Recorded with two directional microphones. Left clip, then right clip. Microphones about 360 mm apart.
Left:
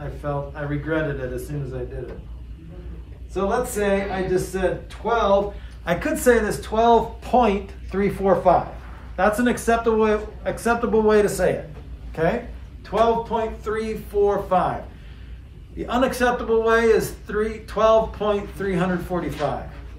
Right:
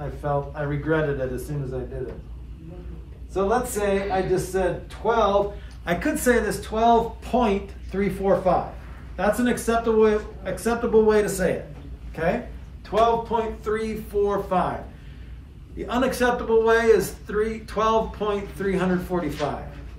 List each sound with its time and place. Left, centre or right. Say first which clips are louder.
0.2 s a man's voice: right 2 dB; centre
3.3 s a man's voice: even; centre
15.8 s a man's voice: left 2 dB; centre